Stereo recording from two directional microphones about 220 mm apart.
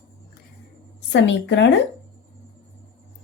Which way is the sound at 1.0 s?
55° left (ahead or behind).